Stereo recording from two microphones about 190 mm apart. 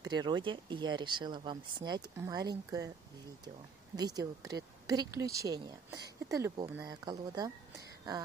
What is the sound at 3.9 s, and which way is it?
A woman's voice, 20° right (ahead or behind).